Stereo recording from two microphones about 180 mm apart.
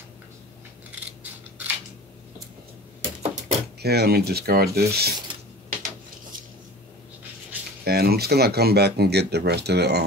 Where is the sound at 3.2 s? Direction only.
35° right (ahead or behind).